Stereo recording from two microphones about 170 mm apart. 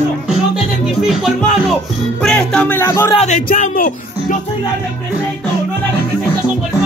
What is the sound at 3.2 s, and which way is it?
Speech, 45° left (ahead or behind).